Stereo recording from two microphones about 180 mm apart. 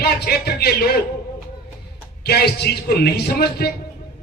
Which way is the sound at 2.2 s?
60° left (ahead or behind).